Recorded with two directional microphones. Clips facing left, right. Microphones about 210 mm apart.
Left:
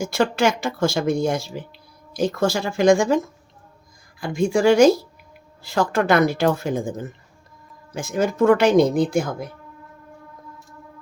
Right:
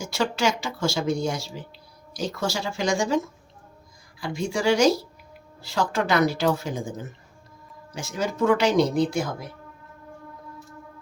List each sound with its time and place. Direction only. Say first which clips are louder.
0.0 s speech: left 5 dB; 55° left (ahead or behind)
4.2 s speech: left 7 dB; 50° left (ahead or behind)